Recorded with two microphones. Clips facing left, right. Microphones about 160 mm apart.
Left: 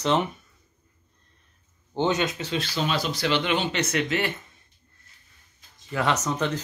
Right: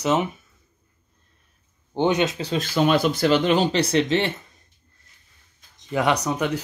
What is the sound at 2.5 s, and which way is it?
Speech, 50° right (ahead or behind).